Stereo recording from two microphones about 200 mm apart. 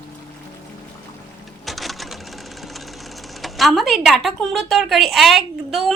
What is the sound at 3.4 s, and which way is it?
A woman's voice, centre (ahead or behind).